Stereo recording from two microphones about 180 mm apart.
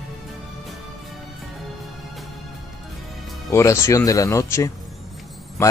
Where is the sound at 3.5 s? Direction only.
15° left (ahead or behind).